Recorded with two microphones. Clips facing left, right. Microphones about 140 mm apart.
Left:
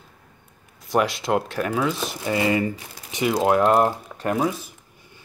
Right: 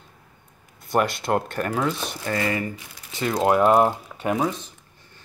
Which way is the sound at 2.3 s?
20° left (ahead or behind).